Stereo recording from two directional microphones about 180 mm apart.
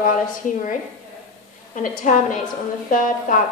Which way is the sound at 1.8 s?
45° left (ahead or behind).